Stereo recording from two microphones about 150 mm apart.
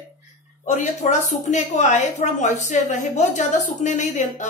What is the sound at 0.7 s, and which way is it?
A woman's voice, 50° left (ahead or behind).